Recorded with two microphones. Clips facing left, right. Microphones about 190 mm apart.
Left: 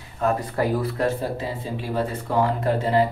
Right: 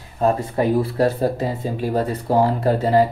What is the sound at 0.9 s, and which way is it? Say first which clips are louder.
Speech: right 5 dB; 40° right (ahead or behind).